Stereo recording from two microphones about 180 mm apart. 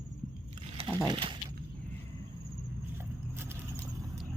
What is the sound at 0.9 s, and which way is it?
Speech, 25° right (ahead or behind).